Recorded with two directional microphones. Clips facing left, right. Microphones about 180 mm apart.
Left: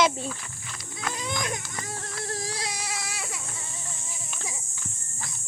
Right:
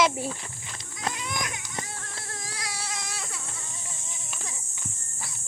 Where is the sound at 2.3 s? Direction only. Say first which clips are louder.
Left 7 dB; 35° left (ahead or behind).